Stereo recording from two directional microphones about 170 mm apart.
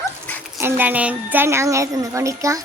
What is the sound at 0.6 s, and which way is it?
Speech, 10° right (ahead or behind).